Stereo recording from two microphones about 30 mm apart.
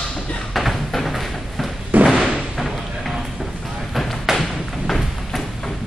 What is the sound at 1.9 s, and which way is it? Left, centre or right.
Thump, right.